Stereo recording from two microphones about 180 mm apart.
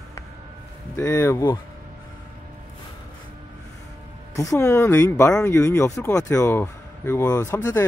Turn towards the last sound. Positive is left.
turn(degrees=20)  # may be behind; listen again after turning